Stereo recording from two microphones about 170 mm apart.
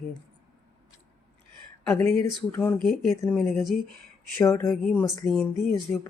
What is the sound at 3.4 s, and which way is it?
Speech, 5° left (ahead or behind).